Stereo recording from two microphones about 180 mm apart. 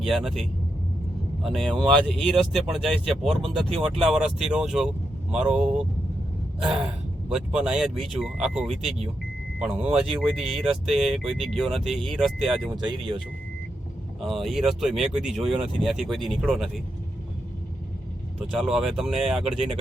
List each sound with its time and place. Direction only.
0.1 s speech: centre (ahead or behind)
1.5 s speech: centre (ahead or behind)
7.3 s speech: 5° right (ahead or behind)
13.0 s speech: 30° right (ahead or behind)
14.2 s speech: centre (ahead or behind)
18.5 s speech: 5° right (ahead or behind)